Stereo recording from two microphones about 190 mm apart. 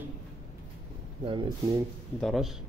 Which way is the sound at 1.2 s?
25° right (ahead or behind).